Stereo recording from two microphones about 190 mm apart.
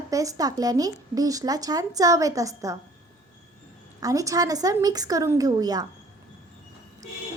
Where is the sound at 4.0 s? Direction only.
15° right (ahead or behind).